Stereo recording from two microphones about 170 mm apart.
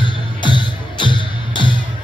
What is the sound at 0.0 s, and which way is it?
Music, 30° left (ahead or behind).